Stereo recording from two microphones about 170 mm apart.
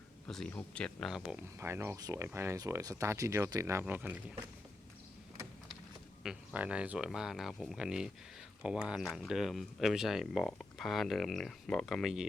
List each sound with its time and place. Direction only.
0.3 s speech: 5° left (ahead or behind)
1.5 s speech: 15° right (ahead or behind)
6.2 s speech: 10° right (ahead or behind)